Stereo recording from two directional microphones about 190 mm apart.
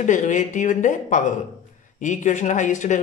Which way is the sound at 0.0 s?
40° left (ahead or behind).